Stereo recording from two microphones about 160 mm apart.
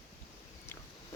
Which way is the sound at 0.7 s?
15° left (ahead or behind).